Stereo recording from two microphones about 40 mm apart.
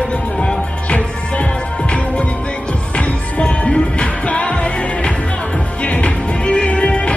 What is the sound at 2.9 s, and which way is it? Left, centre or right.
Music, left.